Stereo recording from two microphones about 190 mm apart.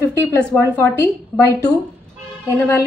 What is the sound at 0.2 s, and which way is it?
A woman's voice, 10° left (ahead or behind).